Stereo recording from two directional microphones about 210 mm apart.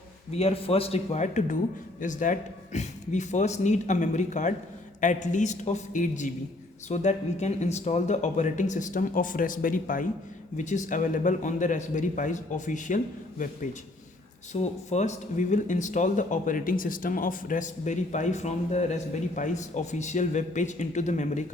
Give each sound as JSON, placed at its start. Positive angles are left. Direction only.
{"t": 0.3, "sound": "speech", "side_deg": 30}
{"t": 14.5, "sound": "speech", "side_deg": 35}